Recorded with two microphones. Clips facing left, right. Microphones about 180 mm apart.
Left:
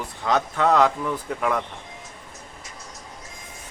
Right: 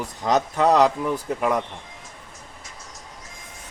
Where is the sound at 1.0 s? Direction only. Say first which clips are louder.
Right 2 dB; 15° right (ahead or behind).